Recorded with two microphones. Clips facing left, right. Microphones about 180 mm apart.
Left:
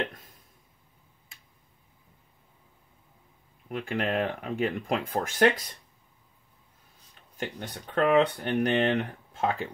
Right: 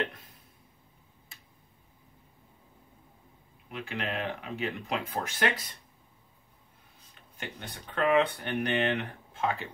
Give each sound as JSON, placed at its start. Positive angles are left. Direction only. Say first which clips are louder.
{"t": 3.6, "sound": "speech", "louder": "left 6 dB", "side_deg": 50}
{"t": 7.3, "sound": "speech", "louder": "left 6 dB", "side_deg": 40}